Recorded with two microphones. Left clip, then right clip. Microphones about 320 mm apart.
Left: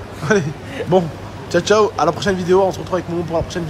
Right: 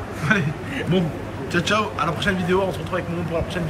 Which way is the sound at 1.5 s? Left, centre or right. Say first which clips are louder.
Left 7 dB; centre.